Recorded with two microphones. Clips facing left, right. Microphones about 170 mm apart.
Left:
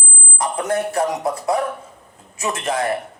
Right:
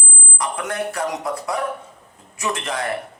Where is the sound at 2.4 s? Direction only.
25° left (ahead or behind).